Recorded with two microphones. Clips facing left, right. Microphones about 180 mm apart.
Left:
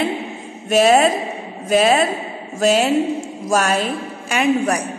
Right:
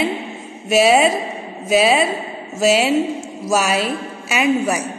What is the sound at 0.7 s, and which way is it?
A woman's voice, 5° right (ahead or behind).